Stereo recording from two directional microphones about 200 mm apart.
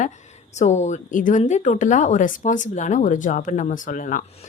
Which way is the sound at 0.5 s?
35° left (ahead or behind).